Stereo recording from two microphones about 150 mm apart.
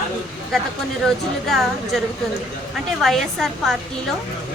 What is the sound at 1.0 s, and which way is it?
A woman's voice, centre (ahead or behind).